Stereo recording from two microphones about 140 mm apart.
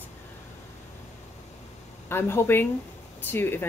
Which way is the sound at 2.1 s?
15° left (ahead or behind).